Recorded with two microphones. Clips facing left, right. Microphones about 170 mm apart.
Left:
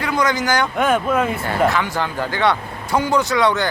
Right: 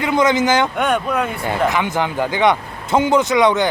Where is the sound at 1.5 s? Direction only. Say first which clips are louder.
Even; 20° right (ahead or behind).